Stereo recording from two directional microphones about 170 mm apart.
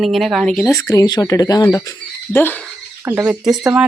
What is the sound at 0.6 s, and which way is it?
Speech, 20° left (ahead or behind).